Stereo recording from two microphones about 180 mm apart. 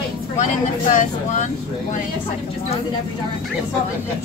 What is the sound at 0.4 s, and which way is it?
Speech, 45° left (ahead or behind).